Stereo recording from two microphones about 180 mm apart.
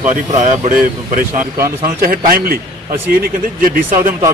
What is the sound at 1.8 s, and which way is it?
Speech, 55° right (ahead or behind).